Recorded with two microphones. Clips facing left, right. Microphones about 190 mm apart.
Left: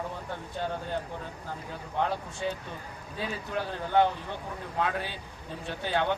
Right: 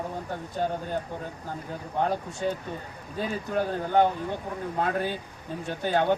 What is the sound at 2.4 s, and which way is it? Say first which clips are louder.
A man's voice: right 4 dB; 45° right (ahead or behind).